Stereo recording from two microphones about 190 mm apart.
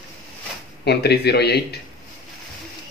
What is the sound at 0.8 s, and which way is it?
Speech, 60° left (ahead or behind).